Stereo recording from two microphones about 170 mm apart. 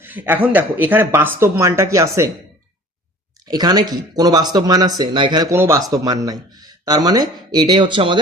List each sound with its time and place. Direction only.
0.0 s speech: 10° right (ahead or behind)
3.5 s speech: 25° right (ahead or behind)